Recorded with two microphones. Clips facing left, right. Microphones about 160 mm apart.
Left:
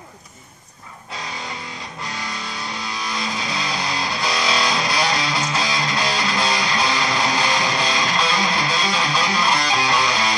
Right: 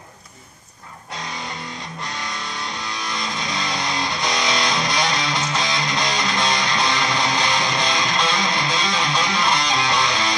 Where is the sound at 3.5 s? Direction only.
5° left (ahead or behind).